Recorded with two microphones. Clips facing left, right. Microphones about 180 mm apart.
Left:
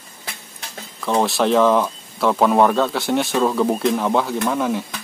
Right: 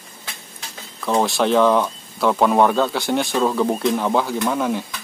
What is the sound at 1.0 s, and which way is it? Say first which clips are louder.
Speech: even; centre (ahead or behind).